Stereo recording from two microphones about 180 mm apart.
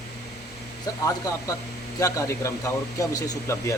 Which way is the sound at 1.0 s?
20° left (ahead or behind).